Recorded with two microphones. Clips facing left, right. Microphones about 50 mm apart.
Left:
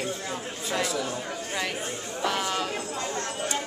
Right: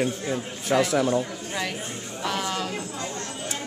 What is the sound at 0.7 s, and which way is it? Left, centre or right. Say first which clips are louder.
Speech: right 7 dB; right.